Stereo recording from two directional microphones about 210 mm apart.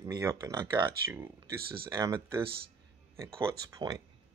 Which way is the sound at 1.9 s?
15° right (ahead or behind).